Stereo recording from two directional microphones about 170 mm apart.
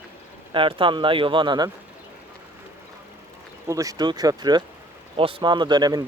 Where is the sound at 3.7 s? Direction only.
20° right (ahead or behind).